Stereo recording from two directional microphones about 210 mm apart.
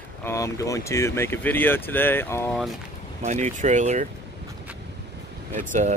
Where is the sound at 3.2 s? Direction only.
35° right (ahead or behind).